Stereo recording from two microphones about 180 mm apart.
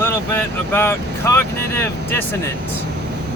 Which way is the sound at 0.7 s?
10° left (ahead or behind).